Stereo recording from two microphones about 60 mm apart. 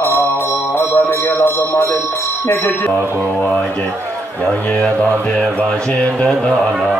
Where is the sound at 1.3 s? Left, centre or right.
Left.